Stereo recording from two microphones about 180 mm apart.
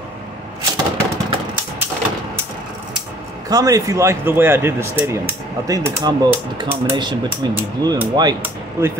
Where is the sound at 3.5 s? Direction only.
20° right (ahead or behind).